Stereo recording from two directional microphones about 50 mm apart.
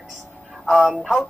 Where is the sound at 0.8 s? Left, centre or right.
Right.